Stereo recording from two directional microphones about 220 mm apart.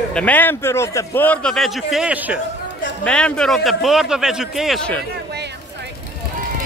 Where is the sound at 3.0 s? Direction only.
5° left (ahead or behind).